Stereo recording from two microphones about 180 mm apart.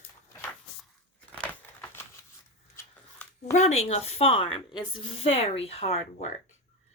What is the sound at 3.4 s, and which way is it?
A woman's voice, 40° left (ahead or behind).